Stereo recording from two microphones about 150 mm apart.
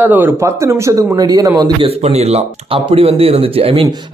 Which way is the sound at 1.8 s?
45° right (ahead or behind).